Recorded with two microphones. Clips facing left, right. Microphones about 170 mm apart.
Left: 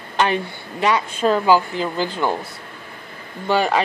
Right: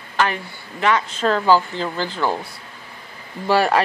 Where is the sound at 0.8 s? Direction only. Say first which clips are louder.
Left 1 dB; 15° left (ahead or behind).